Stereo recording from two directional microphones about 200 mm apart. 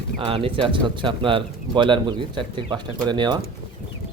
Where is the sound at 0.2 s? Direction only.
25° right (ahead or behind).